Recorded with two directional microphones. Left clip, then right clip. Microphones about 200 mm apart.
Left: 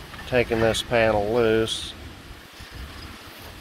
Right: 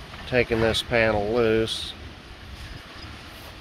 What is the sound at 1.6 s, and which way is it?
Speech, 45° right (ahead or behind).